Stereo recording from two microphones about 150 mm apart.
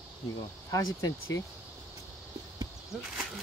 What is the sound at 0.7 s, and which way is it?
Speech, 25° left (ahead or behind).